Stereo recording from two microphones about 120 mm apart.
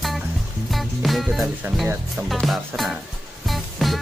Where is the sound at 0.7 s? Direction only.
Centre (ahead or behind).